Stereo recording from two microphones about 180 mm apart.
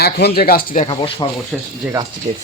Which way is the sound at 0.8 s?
30° left (ahead or behind).